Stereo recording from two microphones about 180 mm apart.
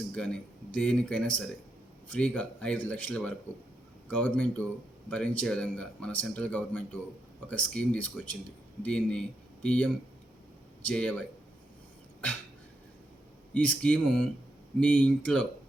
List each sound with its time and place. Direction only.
0.2 s speech: 5° left (ahead or behind)
13.5 s speech: 5° left (ahead or behind)